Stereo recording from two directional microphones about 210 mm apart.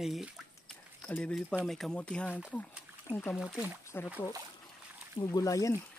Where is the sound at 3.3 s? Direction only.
5° right (ahead or behind).